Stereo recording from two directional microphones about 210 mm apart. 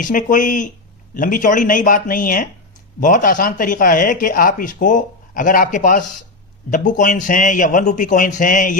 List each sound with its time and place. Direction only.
0.0 s speech: 40° left (ahead or behind)